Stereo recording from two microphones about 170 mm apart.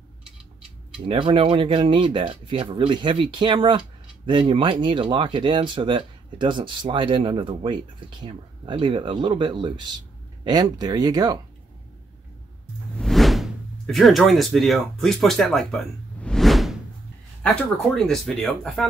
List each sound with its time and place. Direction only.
1.0 s speech: 30° right (ahead or behind)
12.9 s whoosh: centre (ahead or behind)
17.4 s speech: 5° left (ahead or behind)